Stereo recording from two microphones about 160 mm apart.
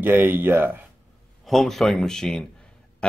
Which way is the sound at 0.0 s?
15° right (ahead or behind).